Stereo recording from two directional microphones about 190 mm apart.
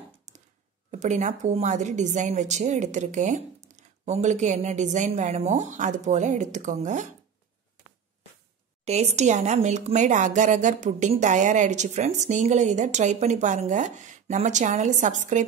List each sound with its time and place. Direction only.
0.9 s a woman's voice: 40° right (ahead or behind)
8.8 s a woman's voice: 35° right (ahead or behind)